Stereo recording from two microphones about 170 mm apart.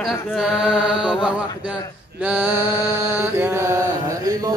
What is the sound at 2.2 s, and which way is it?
Male singing, 10° right (ahead or behind).